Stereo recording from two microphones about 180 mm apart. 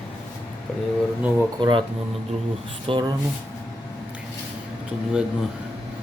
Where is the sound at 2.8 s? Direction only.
25° right (ahead or behind).